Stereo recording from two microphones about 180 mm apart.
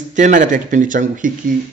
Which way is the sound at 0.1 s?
45° right (ahead or behind).